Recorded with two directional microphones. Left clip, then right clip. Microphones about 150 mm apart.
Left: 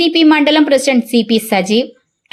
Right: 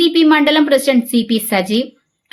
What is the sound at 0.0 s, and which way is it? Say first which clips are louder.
A woman's voice: left 1 dB; 15° left (ahead or behind).